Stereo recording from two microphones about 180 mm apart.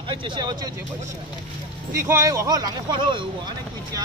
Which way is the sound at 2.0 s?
15° right (ahead or behind).